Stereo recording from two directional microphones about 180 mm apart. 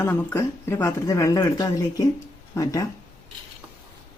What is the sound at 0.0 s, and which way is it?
Speech, 15° left (ahead or behind).